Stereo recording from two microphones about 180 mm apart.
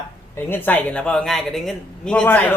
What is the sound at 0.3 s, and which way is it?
Speech, 10° left (ahead or behind).